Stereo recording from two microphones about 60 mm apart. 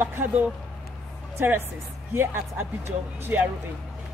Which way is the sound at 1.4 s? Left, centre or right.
Right.